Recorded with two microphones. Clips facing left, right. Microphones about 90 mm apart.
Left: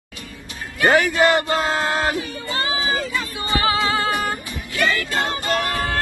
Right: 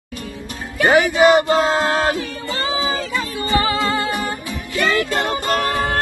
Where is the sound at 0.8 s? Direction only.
15° right (ahead or behind).